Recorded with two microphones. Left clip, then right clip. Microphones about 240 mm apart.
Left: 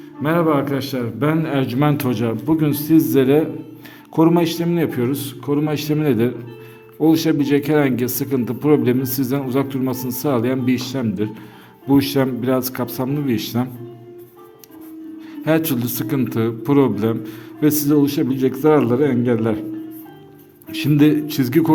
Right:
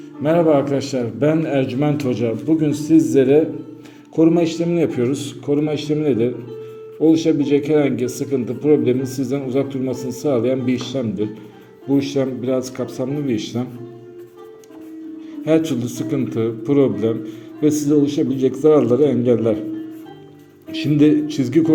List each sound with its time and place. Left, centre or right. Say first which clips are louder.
0.2 s a man's voice: right 3 dB; centre
15.4 s a man's voice: right 1 dB; left
20.7 s a man's voice: even; left